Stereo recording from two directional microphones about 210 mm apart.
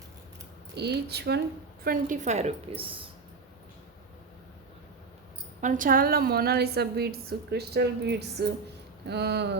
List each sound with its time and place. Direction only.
0.8 s a woman's voice: 50° right (ahead or behind)
1.8 s a woman's voice: 40° right (ahead or behind); by 3.0 s 25° right (ahead or behind)
5.5 s a woman's voice: 40° right (ahead or behind)